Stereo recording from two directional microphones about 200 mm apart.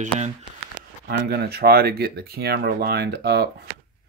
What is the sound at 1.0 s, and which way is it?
Speech, 55° right (ahead or behind).